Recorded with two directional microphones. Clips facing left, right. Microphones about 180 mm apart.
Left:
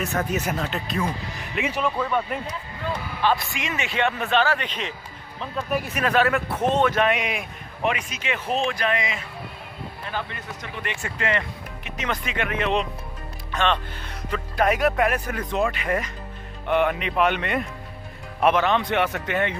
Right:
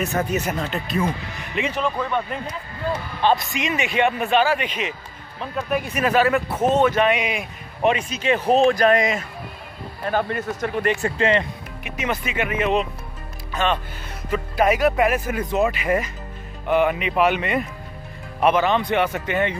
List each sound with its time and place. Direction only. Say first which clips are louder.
0.0 s speech: right 2 dB; centre (ahead or behind)
3.2 s a man's voice: right 3 dB; 20° right (ahead or behind); by 7.4 s centre (ahead or behind)
7.8 s speech: right 6 dB; 30° right (ahead or behind)
11.8 s speech: right 3 dB; 10° right (ahead or behind)